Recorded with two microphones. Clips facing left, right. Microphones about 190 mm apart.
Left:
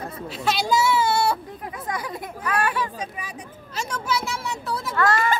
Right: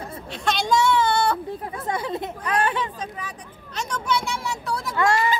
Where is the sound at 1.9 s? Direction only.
25° right (ahead or behind).